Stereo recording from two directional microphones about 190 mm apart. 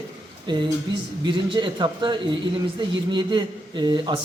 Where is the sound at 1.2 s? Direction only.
25° right (ahead or behind).